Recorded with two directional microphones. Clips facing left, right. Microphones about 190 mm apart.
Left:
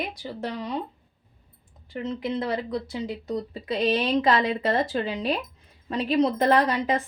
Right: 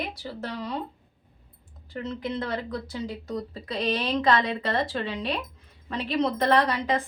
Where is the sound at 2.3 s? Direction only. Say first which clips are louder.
Left 3 dB; 25° left (ahead or behind).